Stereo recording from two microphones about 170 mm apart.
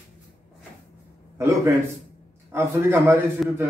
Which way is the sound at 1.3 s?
15° right (ahead or behind).